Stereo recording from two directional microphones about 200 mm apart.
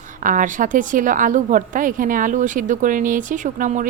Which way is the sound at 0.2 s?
40° right (ahead or behind).